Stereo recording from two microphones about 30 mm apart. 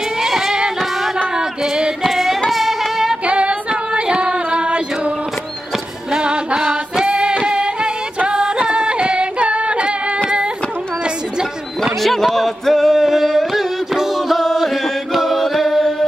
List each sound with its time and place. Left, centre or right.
0.2 s music: centre
2.0 s female singing: centre
2.5 s music: centre
3.3 s female singing: right
6.1 s music: right
12.0 s a sound: centre
13.0 s carnatic music: centre
14.3 s chant: centre
15.1 s music: centre